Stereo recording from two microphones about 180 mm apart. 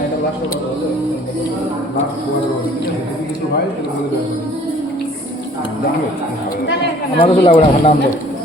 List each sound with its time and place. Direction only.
7.2 s speech: 35° left (ahead or behind)